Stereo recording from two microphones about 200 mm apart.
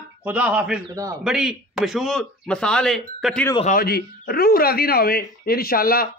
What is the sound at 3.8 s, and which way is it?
Speech, 50° left (ahead or behind).